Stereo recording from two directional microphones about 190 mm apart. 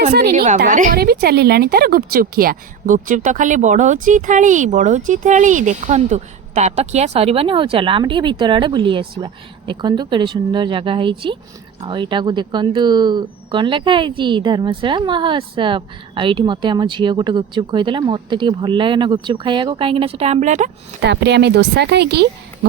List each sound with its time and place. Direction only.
0.1 s speech: 55° right (ahead or behind)
0.3 s a woman's voice: 40° right (ahead or behind)
0.6 s a woman's voice: 50° right (ahead or behind)
21.0 s speech: 65° right (ahead or behind)